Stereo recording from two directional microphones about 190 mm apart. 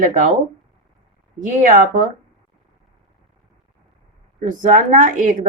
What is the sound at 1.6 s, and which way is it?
Speech, 50° right (ahead or behind).